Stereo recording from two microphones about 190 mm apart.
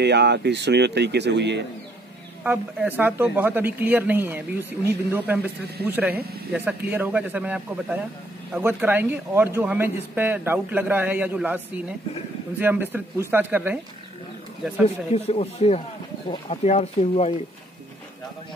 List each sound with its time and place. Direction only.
0.0 s speech: 65° right (ahead or behind)
2.4 s speech: 10° right (ahead or behind)
15.1 s speech: 35° left (ahead or behind)